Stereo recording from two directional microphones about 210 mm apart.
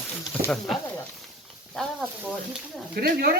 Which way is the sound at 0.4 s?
5° left (ahead or behind).